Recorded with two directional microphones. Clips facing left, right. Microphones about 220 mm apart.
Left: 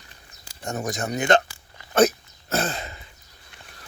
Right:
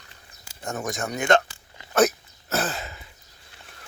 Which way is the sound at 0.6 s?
15° left (ahead or behind).